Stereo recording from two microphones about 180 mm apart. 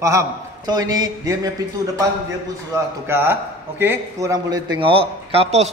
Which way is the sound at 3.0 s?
10° right (ahead or behind).